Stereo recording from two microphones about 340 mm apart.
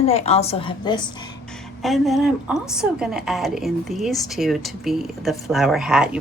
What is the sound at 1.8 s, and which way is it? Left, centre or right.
A woman's voice, centre.